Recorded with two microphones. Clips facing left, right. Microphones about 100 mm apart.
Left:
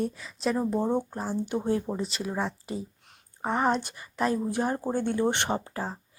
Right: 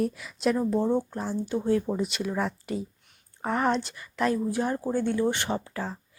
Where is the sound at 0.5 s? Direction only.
15° left (ahead or behind).